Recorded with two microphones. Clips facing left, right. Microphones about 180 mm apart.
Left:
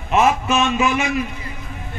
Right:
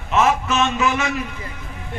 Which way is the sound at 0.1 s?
15° left (ahead or behind).